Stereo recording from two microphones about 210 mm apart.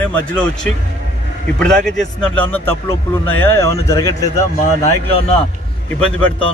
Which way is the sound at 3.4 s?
15° left (ahead or behind).